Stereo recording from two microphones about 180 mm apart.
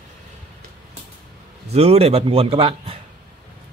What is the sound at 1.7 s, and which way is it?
A man's voice, 35° right (ahead or behind).